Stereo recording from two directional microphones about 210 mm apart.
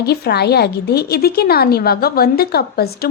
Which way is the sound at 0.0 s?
50° left (ahead or behind).